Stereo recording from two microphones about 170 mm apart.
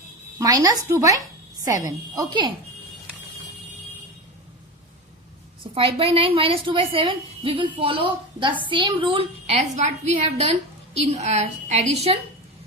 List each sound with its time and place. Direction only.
0.3 s a woman's voice: 20° right (ahead or behind)
5.7 s a woman's voice: 35° right (ahead or behind)